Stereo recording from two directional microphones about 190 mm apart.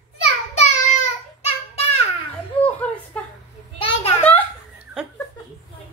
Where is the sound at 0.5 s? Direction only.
35° left (ahead or behind).